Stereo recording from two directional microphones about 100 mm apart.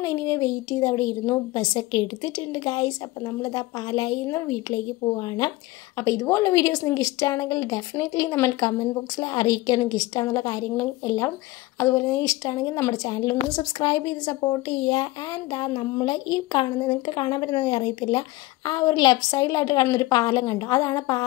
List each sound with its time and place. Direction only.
0.0 s a woman's voice: 30° left (ahead or behind)
5.9 s a woman's voice: 30° left (ahead or behind)